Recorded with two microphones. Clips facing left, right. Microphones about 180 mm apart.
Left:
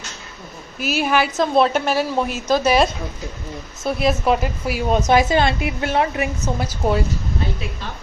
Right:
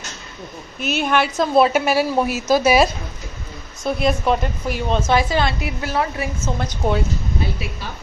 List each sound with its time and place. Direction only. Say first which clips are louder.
0.7 s a woman's voice: even; 5° left (ahead or behind)
3.8 s a woman's voice: even; 5° left (ahead or behind); by 6.5 s 20° left (ahead or behind)
6.6 s a woman's voice: left 1 dB; centre (ahead or behind)